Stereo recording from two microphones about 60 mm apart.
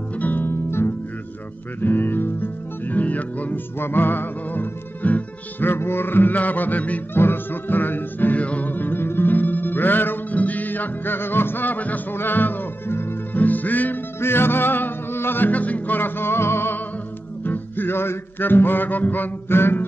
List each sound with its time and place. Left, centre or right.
0.2 s music: left
5.7 s music: left
14.2 s music: left